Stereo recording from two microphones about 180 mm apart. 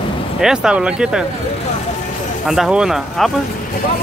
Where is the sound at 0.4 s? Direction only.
5° right (ahead or behind).